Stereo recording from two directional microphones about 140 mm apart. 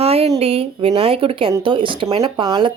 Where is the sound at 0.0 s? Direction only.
45° right (ahead or behind).